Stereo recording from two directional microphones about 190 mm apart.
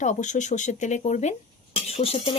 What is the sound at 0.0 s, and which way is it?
Speech, 40° left (ahead or behind).